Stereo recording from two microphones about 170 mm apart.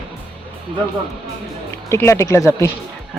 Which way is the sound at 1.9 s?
15° left (ahead or behind).